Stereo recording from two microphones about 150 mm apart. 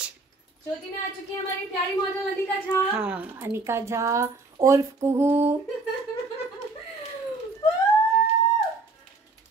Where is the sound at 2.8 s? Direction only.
10° right (ahead or behind).